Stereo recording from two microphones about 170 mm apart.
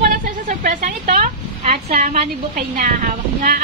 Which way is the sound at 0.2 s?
50° right (ahead or behind).